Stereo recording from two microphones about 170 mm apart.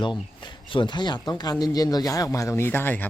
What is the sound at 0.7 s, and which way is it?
Speech, 25° left (ahead or behind).